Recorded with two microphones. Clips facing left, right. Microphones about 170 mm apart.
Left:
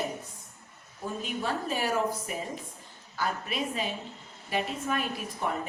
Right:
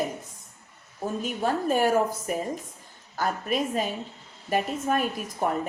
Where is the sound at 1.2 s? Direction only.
45° right (ahead or behind).